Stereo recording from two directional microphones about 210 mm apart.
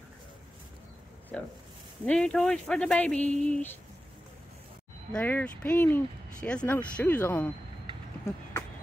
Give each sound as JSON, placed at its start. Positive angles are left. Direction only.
{"t": 1.3, "sound": "speech", "side_deg": 5}
{"t": 5.1, "sound": "speech", "side_deg": 5}